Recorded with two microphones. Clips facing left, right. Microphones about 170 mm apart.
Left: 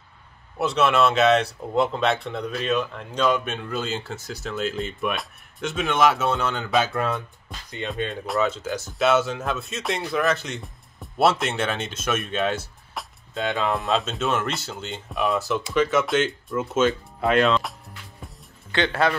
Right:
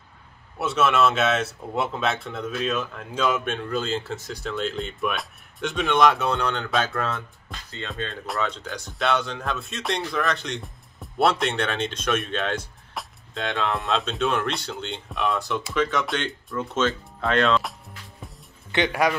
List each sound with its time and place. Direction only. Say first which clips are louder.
0.6 s speech: left 1 dB; centre (ahead or behind)
6.9 s speech: left 2 dB; 20° left (ahead or behind)
8.3 s speech: left 5 dB; 5° left (ahead or behind)
18.2 s music: even; centre (ahead or behind)
18.7 s speech: even; 15° right (ahead or behind)